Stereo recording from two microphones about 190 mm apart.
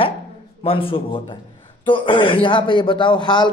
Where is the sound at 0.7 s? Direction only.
30° left (ahead or behind).